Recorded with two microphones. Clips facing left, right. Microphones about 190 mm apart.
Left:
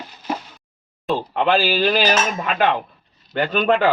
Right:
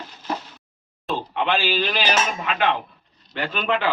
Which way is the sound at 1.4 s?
40° left (ahead or behind).